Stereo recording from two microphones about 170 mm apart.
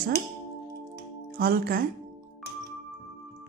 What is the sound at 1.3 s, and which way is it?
Speech, 60° right (ahead or behind).